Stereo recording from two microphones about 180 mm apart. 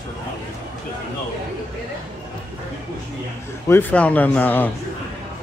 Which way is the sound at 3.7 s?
10° left (ahead or behind).